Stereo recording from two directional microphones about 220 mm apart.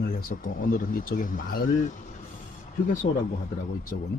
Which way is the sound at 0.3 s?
40° left (ahead or behind).